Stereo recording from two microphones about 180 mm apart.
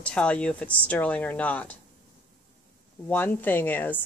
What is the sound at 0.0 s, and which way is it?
Speech, 5° left (ahead or behind).